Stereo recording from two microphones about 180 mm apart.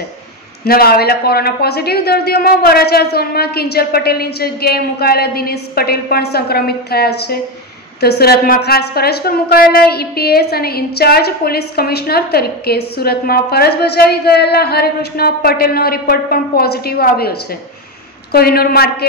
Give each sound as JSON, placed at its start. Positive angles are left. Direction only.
{"t": 0.7, "sound": "a woman's voice", "side_deg": 55}